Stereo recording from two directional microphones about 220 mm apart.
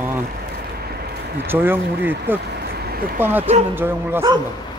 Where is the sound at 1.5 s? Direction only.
10° right (ahead or behind).